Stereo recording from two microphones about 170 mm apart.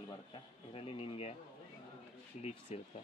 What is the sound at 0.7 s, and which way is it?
Speech, 35° left (ahead or behind).